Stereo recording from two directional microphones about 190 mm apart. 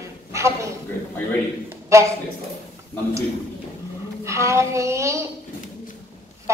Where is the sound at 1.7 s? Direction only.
15° right (ahead or behind).